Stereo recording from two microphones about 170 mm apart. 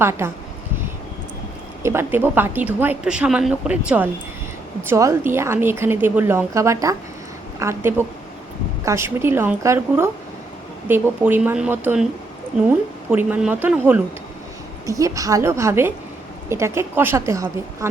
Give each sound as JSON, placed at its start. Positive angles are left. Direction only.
{"t": 0.0, "sound": "a woman's voice", "side_deg": -15}
{"t": 1.8, "sound": "a woman's voice", "side_deg": -15}